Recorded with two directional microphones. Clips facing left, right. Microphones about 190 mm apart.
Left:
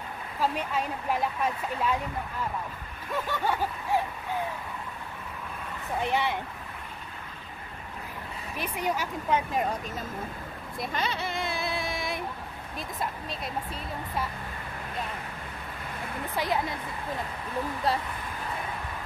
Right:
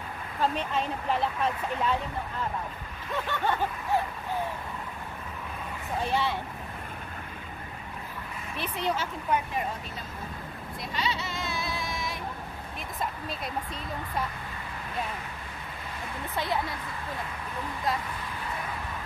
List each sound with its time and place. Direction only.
0.4 s speech: 10° left (ahead or behind)
3.3 s speech: 10° left (ahead or behind)
5.9 s speech: 15° left (ahead or behind)
8.5 s speech: 10° left (ahead or behind)
10.8 s speech: 50° left (ahead or behind)
16.3 s speech: 20° left (ahead or behind)